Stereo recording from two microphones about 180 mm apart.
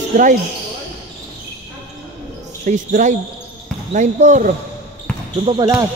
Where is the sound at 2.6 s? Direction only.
45° right (ahead or behind).